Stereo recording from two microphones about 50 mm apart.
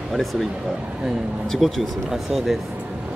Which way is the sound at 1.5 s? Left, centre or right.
Centre.